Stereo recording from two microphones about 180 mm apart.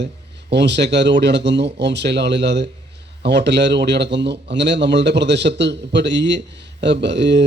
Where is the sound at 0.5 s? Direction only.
70° right (ahead or behind).